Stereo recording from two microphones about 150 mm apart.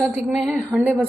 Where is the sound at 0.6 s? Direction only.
15° right (ahead or behind).